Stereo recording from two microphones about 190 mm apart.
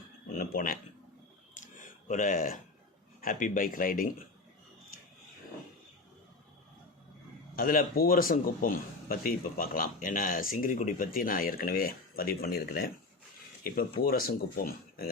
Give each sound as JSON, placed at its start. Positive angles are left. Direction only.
{"t": 0.3, "sound": "a sound", "side_deg": 50}
{"t": 3.2, "sound": "a man's voice", "side_deg": 45}
{"t": 7.5, "sound": "a man's voice", "side_deg": 50}
{"t": 14.0, "sound": "a man's voice", "side_deg": 50}